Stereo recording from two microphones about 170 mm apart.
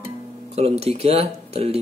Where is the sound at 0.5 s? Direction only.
35° right (ahead or behind).